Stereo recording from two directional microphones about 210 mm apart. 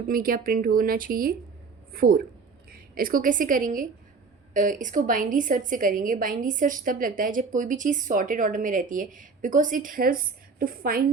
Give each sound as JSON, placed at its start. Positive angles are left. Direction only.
{"t": 0.1, "sound": "a woman's voice", "side_deg": -40}